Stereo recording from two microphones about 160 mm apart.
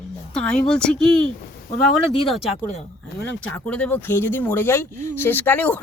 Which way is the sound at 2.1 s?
35° left (ahead or behind).